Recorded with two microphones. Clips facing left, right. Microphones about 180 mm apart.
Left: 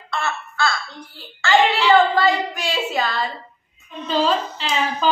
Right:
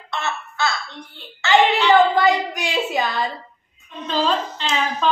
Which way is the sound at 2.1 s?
15° right (ahead or behind).